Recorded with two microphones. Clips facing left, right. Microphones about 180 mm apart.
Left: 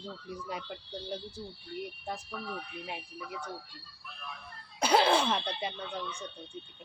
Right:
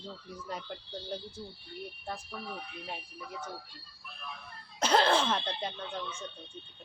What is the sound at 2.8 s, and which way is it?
Speech, 10° left (ahead or behind).